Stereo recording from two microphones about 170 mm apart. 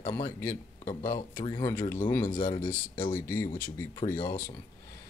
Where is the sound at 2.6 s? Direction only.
55° left (ahead or behind).